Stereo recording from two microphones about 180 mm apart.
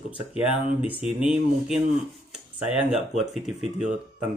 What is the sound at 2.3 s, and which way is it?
Speech, 5° right (ahead or behind).